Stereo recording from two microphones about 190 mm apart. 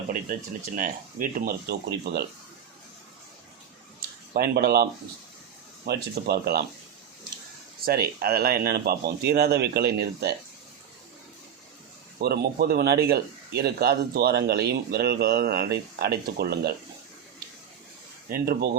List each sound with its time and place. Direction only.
0.3 s speech: 50° right (ahead or behind)
4.4 s speech: 55° right (ahead or behind)
7.9 s speech: 55° right (ahead or behind)
12.2 s speech: 55° right (ahead or behind)
18.3 s speech: 50° right (ahead or behind)